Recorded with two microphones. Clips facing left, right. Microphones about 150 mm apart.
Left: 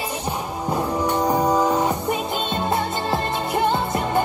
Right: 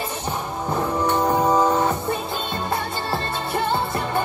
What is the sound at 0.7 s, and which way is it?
Music, 15° left (ahead or behind).